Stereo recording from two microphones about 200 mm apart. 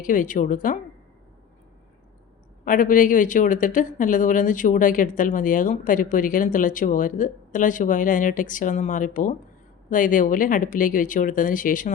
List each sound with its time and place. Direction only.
0.0 s speech: 40° left (ahead or behind)
2.6 s speech: 40° left (ahead or behind)